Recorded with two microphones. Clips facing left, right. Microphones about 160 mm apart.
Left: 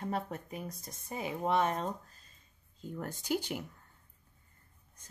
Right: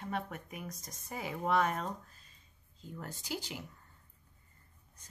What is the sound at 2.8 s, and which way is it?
Speech, 50° left (ahead or behind).